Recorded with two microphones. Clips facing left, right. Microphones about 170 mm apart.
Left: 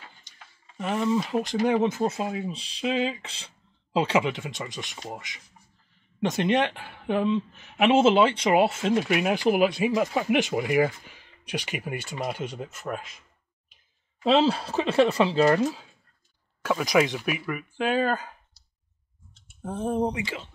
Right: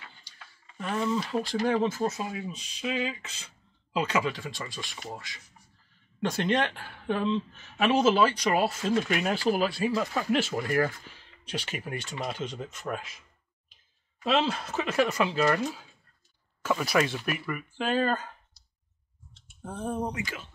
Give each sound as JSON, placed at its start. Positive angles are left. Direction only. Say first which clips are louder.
{"t": 0.3, "sound": "a sound", "louder": "even", "side_deg": 20}
{"t": 0.7, "sound": "speech", "louder": "left 4 dB", "side_deg": 20}
{"t": 9.0, "sound": "speech", "louder": "left 4 dB", "side_deg": 10}
{"t": 14.2, "sound": "speech", "louder": "left 6 dB", "side_deg": 35}
{"t": 16.8, "sound": "speech", "louder": "left 5 dB", "side_deg": 15}
{"t": 19.6, "sound": "speech", "louder": "left 6 dB", "side_deg": 20}